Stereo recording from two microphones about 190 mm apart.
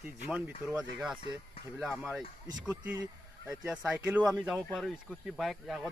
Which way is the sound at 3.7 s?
5° right (ahead or behind).